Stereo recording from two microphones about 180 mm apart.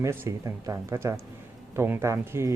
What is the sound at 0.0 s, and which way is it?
Speech, 15° right (ahead or behind).